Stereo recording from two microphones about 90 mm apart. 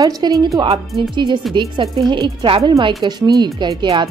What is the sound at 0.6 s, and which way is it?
A woman's voice, 60° right (ahead or behind).